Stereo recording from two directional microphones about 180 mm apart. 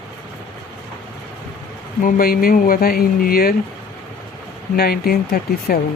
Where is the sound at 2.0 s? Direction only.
55° left (ahead or behind).